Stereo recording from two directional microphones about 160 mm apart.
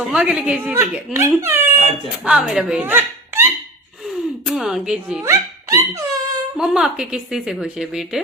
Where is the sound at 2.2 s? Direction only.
5° right (ahead or behind).